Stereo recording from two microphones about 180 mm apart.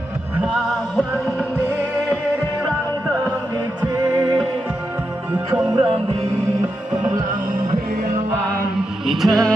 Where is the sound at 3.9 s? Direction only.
20° right (ahead or behind).